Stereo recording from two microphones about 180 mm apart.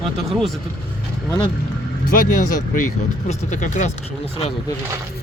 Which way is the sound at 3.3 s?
40° left (ahead or behind).